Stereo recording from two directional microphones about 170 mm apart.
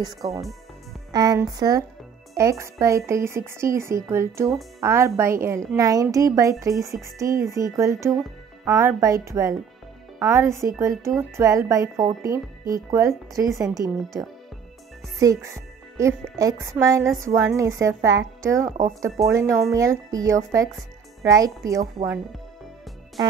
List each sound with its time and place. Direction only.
0.0 s a woman's voice: 20° right (ahead or behind)
18.7 s speech: 50° right (ahead or behind)
19.2 s speech: 15° right (ahead or behind)